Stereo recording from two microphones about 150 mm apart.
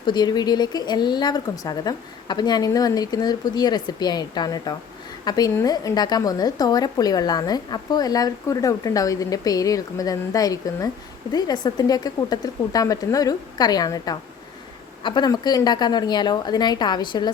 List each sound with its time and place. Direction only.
0.0 s a woman's voice: 30° left (ahead or behind)